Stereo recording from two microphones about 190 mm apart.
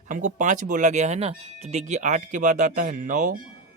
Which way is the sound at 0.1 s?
40° right (ahead or behind).